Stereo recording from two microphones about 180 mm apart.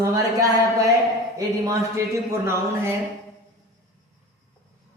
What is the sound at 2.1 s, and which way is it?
Speech, 15° right (ahead or behind).